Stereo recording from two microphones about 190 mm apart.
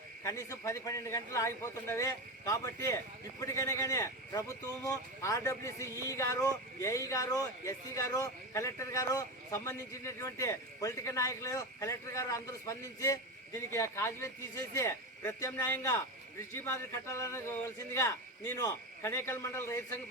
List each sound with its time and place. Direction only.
0.2 s a man's voice: 15° left (ahead or behind)